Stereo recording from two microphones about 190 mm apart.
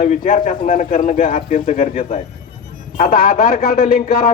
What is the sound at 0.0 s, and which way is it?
A man's voice, 40° left (ahead or behind).